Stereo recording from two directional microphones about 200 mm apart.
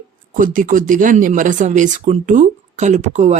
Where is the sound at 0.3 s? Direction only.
40° right (ahead or behind).